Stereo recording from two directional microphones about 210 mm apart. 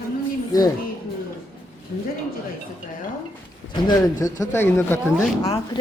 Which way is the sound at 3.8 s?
15° left (ahead or behind).